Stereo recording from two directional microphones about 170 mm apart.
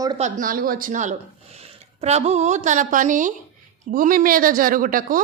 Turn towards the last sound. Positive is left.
turn(degrees=-55)  # may be behind; listen again after turning